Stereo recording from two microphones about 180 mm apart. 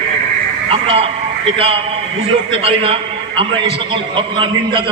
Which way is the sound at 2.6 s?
30° right (ahead or behind).